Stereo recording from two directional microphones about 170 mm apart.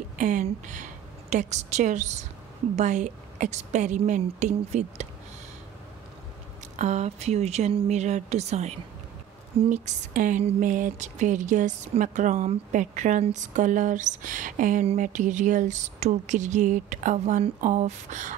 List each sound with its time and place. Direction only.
0.2 s a woman's voice: 45° right (ahead or behind)
6.8 s speech: 40° right (ahead or behind)